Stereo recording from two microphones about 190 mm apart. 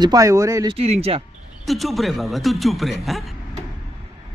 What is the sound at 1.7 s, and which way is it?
A man's voice, centre (ahead or behind).